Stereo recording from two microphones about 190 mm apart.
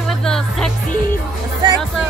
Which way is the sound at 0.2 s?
5° left (ahead or behind).